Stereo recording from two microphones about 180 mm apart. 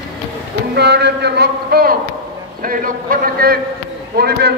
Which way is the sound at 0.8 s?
70° right (ahead or behind).